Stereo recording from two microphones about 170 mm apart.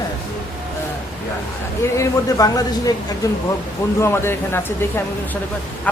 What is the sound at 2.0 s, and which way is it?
Speech, 20° left (ahead or behind).